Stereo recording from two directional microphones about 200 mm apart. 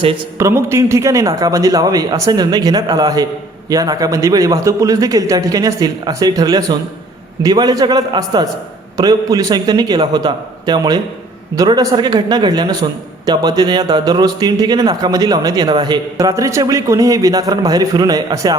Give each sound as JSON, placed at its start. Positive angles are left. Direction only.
{"t": 0.3, "sound": "a man's voice", "side_deg": -15}